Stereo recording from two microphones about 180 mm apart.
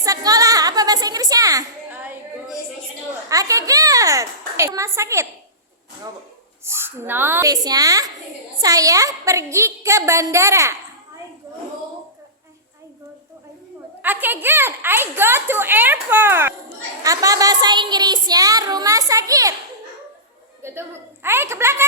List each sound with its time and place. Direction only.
0.0 s a sound: 20° right (ahead or behind)
3.2 s a child's voice: 20° right (ahead or behind)
6.7 s a woman's voice: 15° right (ahead or behind)
14.0 s a woman's voice: 10° right (ahead or behind)
17.0 s a sound: 20° right (ahead or behind)
20.6 s a woman's voice: 15° right (ahead or behind)